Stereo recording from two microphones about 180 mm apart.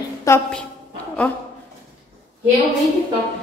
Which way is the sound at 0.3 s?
15° left (ahead or behind).